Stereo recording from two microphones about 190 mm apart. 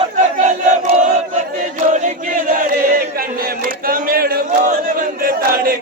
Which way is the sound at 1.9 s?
40° right (ahead or behind).